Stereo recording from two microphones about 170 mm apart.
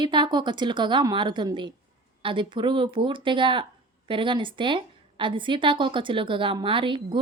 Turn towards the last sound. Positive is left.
turn(degrees=-30)  # may be behind; listen again after turning